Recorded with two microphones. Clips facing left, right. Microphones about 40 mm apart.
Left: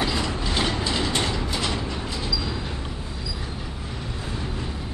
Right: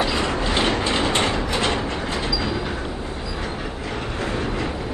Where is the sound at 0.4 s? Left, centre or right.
Right.